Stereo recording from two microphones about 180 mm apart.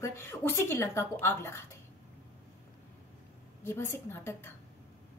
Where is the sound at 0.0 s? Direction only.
15° left (ahead or behind).